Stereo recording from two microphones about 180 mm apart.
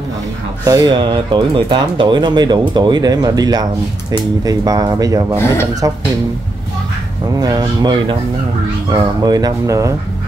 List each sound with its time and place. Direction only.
0.7 s speech: 20° right (ahead or behind)
5.3 s speech: 15° left (ahead or behind)
7.3 s speech: 20° right (ahead or behind)